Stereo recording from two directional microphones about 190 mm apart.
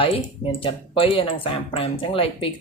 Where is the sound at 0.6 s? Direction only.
30° left (ahead or behind).